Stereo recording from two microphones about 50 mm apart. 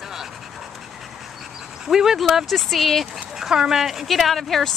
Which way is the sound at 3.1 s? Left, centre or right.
Centre.